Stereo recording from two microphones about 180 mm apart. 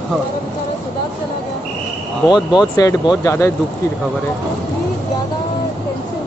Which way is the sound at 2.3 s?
5° right (ahead or behind).